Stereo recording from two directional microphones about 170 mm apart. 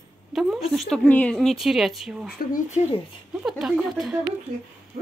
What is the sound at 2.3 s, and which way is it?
Speech, 50° left (ahead or behind).